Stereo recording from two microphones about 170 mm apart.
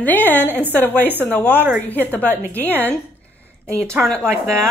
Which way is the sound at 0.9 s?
10° right (ahead or behind).